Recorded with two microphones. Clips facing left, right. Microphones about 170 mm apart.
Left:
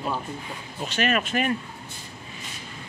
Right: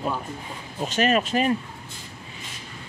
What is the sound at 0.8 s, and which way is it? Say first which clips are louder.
Speech: right 3 dB; 40° right (ahead or behind).